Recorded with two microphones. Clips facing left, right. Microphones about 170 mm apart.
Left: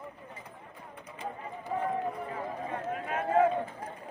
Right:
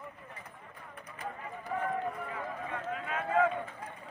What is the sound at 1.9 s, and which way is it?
Run, 15° left (ahead or behind).